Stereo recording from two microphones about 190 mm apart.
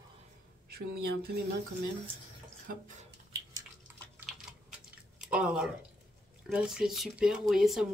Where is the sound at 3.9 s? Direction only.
10° right (ahead or behind).